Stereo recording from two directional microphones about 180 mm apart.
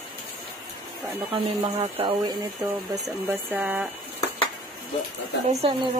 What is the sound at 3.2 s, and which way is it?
Speech, 10° right (ahead or behind).